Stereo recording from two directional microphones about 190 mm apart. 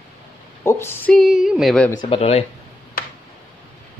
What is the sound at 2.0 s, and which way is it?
Speech, 30° left (ahead or behind).